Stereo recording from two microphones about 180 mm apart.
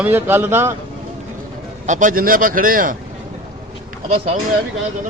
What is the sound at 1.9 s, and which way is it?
A man's voice, 45° right (ahead or behind).